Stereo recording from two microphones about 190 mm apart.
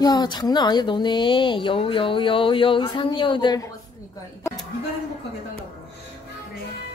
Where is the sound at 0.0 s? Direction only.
20° left (ahead or behind).